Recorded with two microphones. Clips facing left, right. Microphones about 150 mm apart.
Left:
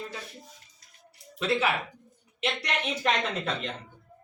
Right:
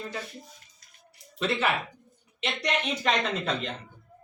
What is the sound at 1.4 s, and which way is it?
Speech, 5° left (ahead or behind).